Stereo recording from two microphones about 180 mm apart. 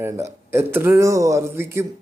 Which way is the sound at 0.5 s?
15° right (ahead or behind).